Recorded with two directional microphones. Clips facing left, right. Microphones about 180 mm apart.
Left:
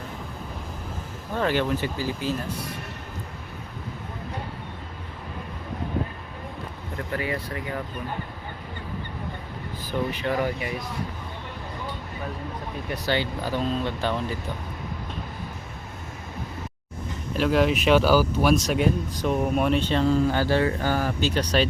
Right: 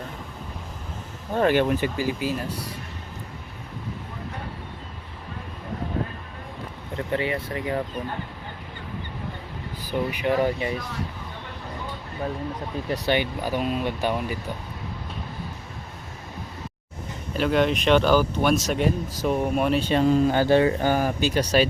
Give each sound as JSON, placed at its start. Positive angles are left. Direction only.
{"t": 1.5, "sound": "speech", "side_deg": -15}
{"t": 6.9, "sound": "speech", "side_deg": -25}
{"t": 9.9, "sound": "speech", "side_deg": -15}
{"t": 13.1, "sound": "speech", "side_deg": -15}
{"t": 17.3, "sound": "speech", "side_deg": 0}
{"t": 19.9, "sound": "speech", "side_deg": -15}